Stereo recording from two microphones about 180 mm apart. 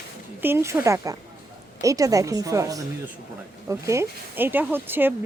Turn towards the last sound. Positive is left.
turn(degrees=-10)  # may be behind; listen again after turning